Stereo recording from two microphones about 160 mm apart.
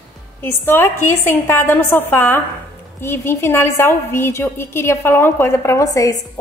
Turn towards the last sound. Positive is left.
turn(degrees=20)  # may be behind; listen again after turning